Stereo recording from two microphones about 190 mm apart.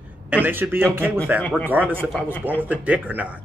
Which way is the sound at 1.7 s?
10° right (ahead or behind).